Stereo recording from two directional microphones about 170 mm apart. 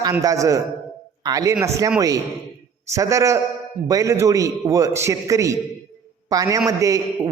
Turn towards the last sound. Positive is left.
turn(degrees=-20)  # may be behind; listen again after turning